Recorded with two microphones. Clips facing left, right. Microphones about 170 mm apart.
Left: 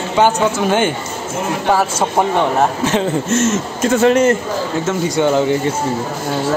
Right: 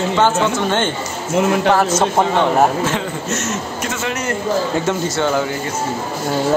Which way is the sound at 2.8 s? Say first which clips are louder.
Left 5 dB; 25° left (ahead or behind).